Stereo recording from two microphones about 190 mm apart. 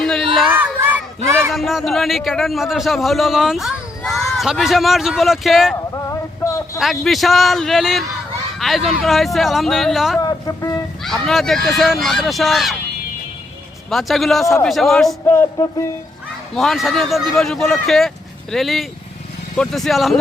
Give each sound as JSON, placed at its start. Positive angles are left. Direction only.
{"t": 0.0, "sound": "a sound", "side_deg": 0}
{"t": 0.5, "sound": "crowd", "side_deg": -10}
{"t": 1.5, "sound": "a man's voice", "side_deg": 0}
{"t": 5.9, "sound": "a sound", "side_deg": 15}
{"t": 6.7, "sound": "a man's voice", "side_deg": 0}
{"t": 10.2, "sound": "speech", "side_deg": 20}
{"t": 11.0, "sound": "a man's voice", "side_deg": 0}
{"t": 13.9, "sound": "a man's voice", "side_deg": 0}
{"t": 15.3, "sound": "music", "side_deg": 10}
{"t": 16.6, "sound": "a man's voice", "side_deg": 0}